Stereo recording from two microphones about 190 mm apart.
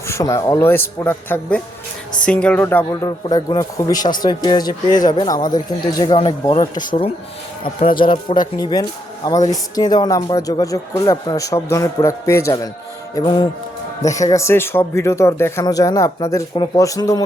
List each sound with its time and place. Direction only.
0.1 s a man's voice: 15° left (ahead or behind)